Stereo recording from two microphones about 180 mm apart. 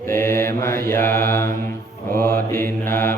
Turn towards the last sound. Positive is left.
turn(degrees=15)  # may be behind; listen again after turning